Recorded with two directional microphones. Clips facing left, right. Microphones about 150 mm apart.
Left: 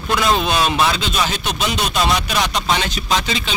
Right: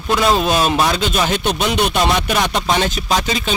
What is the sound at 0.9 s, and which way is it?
Speech, 50° right (ahead or behind).